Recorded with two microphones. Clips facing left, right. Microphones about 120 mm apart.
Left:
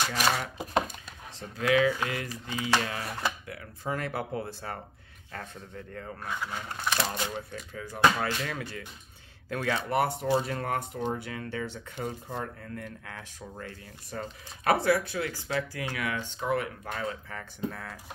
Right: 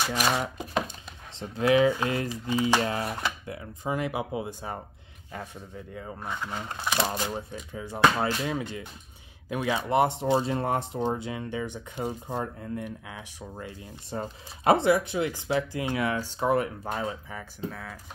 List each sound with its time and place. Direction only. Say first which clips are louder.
0.0 s speech: right 2 dB; 10° right (ahead or behind)
0.8 s speech: even; 25° right (ahead or behind)
17.6 s speech: left 1 dB; centre (ahead or behind)